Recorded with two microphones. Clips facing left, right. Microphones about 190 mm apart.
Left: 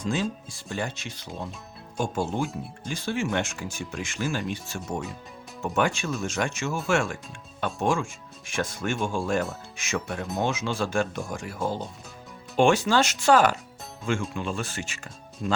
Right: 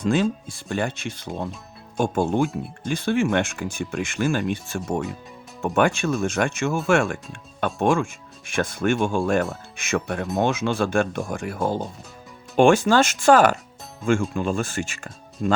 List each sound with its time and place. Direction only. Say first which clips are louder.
0.0 s speech: right 7 dB; 60° right (ahead or behind)